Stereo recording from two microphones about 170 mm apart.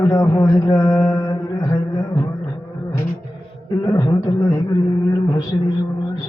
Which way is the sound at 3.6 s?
20° left (ahead or behind).